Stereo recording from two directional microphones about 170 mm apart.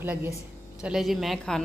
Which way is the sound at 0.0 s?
10° right (ahead or behind).